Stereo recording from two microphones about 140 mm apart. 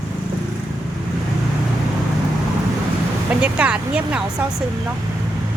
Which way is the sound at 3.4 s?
10° right (ahead or behind).